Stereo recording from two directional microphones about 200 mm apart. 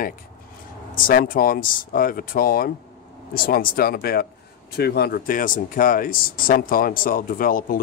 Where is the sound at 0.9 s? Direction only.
45° left (ahead or behind).